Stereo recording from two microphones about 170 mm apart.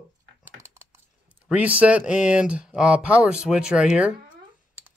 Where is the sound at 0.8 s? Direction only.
15° right (ahead or behind).